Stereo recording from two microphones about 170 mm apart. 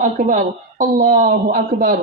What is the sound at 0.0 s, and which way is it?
A woman's voice, 50° right (ahead or behind).